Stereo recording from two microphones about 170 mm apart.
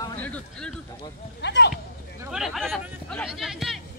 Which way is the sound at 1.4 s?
90° left.